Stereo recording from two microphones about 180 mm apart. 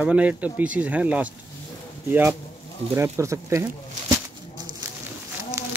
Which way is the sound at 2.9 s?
15° right (ahead or behind).